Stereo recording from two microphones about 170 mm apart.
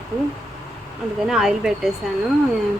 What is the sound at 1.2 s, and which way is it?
Speech, centre (ahead or behind).